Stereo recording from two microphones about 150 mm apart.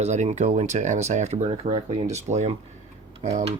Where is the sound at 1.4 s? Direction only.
40° right (ahead or behind).